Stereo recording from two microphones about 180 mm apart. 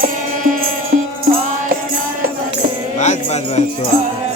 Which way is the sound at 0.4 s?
45° right (ahead or behind).